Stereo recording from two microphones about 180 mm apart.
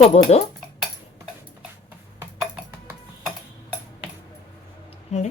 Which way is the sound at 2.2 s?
10° right (ahead or behind).